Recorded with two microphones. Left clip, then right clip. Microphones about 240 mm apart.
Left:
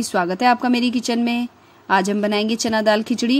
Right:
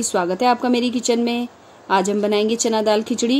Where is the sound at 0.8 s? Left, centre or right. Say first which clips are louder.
Right 2 dB; left.